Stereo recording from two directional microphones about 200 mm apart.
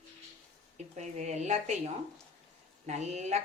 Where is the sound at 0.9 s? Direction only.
35° right (ahead or behind).